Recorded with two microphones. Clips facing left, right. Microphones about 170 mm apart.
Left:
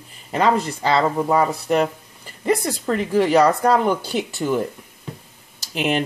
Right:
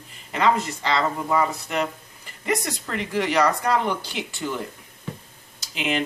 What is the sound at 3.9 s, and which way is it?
Speech, 45° left (ahead or behind).